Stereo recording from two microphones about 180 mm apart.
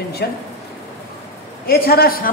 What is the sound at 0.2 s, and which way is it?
Speech, 65° left (ahead or behind).